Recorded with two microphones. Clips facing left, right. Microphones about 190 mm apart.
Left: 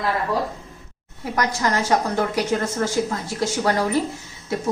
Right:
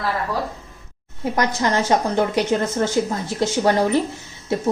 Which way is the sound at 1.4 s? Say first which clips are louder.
Right 2 dB; 25° right (ahead or behind).